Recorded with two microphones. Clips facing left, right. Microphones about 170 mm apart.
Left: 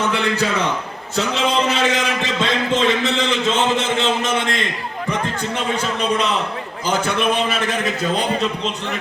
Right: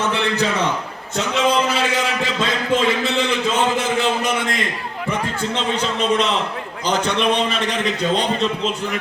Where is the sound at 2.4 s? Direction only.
20° left (ahead or behind).